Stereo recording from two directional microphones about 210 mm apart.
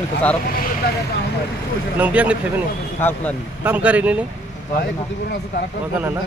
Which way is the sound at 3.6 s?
5° right (ahead or behind).